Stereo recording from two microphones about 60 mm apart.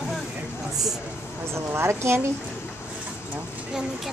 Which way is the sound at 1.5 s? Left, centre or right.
Right.